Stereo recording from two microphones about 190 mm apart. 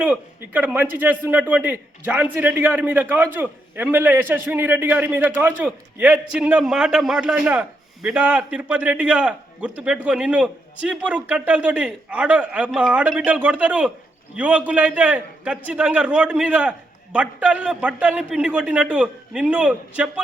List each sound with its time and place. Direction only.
0.0 s a man's voice: 10° right (ahead or behind)